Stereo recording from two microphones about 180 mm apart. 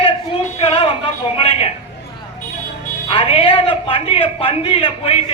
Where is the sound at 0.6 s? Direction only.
30° left (ahead or behind).